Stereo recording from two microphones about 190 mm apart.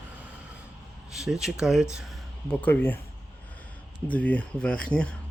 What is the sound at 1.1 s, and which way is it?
Speech, 5° right (ahead or behind).